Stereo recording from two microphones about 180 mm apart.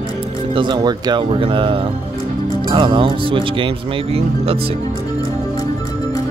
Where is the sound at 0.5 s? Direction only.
25° right (ahead or behind).